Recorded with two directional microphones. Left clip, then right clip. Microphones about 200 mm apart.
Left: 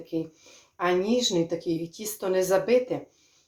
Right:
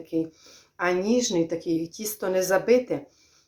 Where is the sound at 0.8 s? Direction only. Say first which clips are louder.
Right 1 dB; 20° right (ahead or behind).